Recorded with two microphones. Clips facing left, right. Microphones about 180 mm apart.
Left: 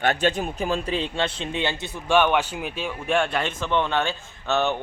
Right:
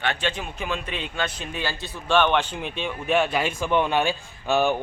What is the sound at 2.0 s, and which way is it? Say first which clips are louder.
Speech: left 1 dB; 10° left (ahead or behind).